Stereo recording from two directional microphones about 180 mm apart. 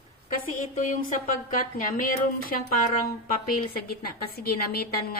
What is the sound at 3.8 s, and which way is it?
A woman's voice, 55° left (ahead or behind).